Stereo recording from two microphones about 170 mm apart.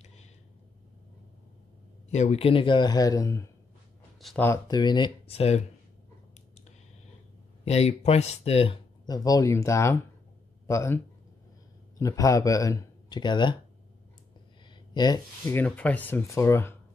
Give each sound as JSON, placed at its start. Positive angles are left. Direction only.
{"t": 2.0, "sound": "speech", "side_deg": 40}
{"t": 7.6, "sound": "speech", "side_deg": 40}
{"t": 9.0, "sound": "speech", "side_deg": 20}
{"t": 12.0, "sound": "speech", "side_deg": 20}
{"t": 15.0, "sound": "speech", "side_deg": 25}
{"t": 15.5, "sound": "speech", "side_deg": 10}